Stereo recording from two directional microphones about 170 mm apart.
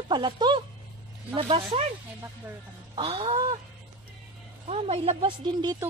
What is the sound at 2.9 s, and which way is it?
Speech, 30° right (ahead or behind).